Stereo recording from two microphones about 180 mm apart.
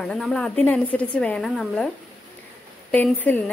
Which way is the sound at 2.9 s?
10° left (ahead or behind).